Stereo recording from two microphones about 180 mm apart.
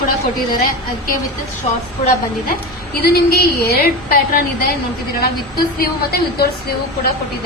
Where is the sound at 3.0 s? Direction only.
60° left (ahead or behind).